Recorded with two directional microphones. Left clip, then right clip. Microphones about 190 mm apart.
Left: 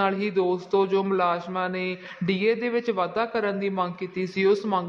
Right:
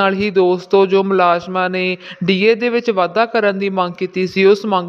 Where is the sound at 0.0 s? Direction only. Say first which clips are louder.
Right 10 dB; 45° right (ahead or behind).